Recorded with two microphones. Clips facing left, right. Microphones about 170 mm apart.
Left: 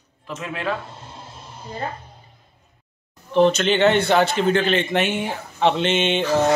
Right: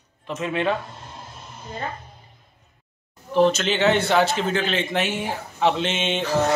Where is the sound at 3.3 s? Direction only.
5° right (ahead or behind).